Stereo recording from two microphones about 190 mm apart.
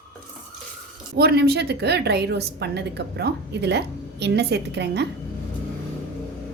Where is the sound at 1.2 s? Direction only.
55° right (ahead or behind).